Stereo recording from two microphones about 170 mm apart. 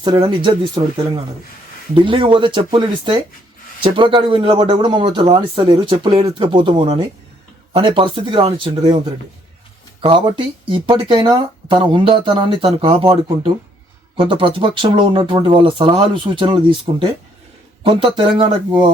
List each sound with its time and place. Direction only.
0.0 s speech: 25° right (ahead or behind)
10.0 s speech: 30° right (ahead or behind)